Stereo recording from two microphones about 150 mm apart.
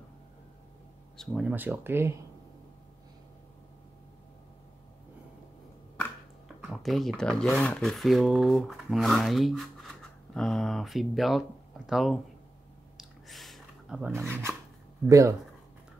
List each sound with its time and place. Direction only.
1.1 s speech: centre (ahead or behind)
1.5 s speech: 15° right (ahead or behind)
6.6 s speech: centre (ahead or behind)
12.9 s a sound: centre (ahead or behind)
14.1 s speech: 15° right (ahead or behind)